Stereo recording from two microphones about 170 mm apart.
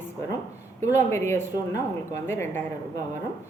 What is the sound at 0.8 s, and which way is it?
A woman's voice, 15° left (ahead or behind).